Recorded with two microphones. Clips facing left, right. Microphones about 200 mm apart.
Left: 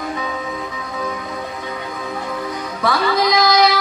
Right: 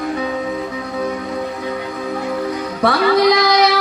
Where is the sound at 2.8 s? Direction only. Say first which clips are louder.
Right 4 dB; 65° right (ahead or behind).